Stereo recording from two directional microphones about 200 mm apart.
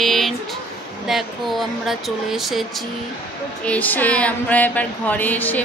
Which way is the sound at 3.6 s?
10° left (ahead or behind).